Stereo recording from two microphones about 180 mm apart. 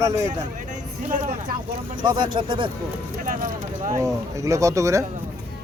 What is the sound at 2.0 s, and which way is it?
Speech, 25° right (ahead or behind).